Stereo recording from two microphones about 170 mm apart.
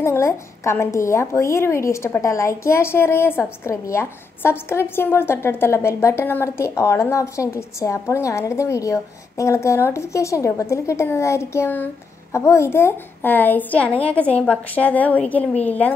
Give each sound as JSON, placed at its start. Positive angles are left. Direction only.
{"t": 0.0, "sound": "a woman's voice", "side_deg": 15}